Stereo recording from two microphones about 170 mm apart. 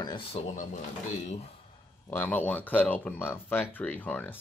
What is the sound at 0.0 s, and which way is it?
Speech, 25° left (ahead or behind).